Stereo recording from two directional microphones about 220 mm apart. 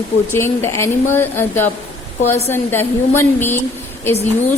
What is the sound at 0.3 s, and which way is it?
Speech, 10° left (ahead or behind).